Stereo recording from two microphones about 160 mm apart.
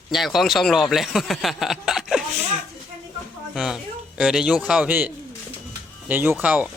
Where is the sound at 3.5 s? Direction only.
Centre (ahead or behind).